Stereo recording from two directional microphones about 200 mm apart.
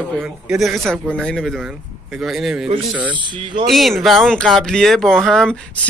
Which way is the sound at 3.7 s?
Centre (ahead or behind).